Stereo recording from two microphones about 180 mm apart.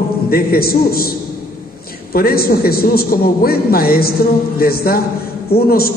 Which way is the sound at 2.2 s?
55° left (ahead or behind).